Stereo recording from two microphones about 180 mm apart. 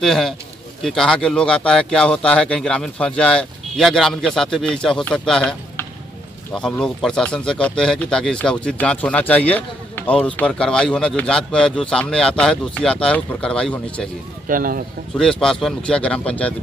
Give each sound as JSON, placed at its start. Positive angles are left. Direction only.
{"t": 0.0, "sound": "speech", "side_deg": 0}
{"t": 14.5, "sound": "speech", "side_deg": -50}
{"t": 15.1, "sound": "speech", "side_deg": 5}